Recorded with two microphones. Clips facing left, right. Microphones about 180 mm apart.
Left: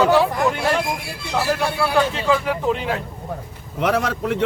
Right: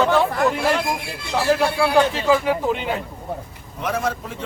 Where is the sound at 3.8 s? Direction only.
75° left (ahead or behind).